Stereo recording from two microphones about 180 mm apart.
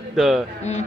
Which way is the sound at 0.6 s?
40° left (ahead or behind).